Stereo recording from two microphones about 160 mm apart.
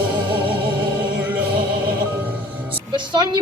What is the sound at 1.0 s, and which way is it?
Music, 10° right (ahead or behind).